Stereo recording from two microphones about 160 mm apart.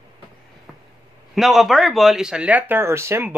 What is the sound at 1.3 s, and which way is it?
Speech, centre (ahead or behind).